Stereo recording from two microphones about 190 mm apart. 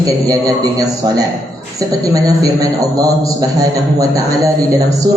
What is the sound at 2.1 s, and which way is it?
A man's voice, 20° right (ahead or behind).